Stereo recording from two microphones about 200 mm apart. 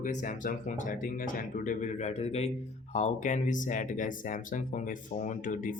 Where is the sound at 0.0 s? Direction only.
40° left (ahead or behind).